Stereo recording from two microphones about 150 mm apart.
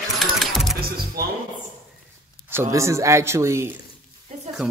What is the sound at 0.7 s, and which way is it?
Music, 90° right.